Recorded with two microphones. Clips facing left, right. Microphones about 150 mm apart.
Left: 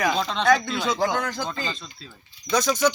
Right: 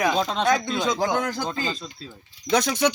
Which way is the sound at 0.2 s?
45° right (ahead or behind).